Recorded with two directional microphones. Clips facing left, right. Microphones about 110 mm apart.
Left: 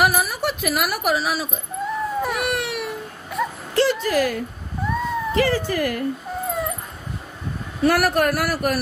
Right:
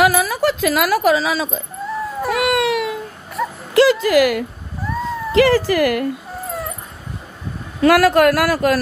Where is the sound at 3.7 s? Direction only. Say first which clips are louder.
Right 7 dB; 90° right.